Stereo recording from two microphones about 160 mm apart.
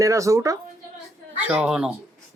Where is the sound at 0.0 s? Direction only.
20° right (ahead or behind).